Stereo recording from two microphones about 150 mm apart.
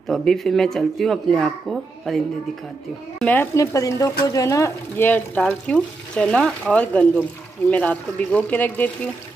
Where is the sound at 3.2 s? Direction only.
10° left (ahead or behind).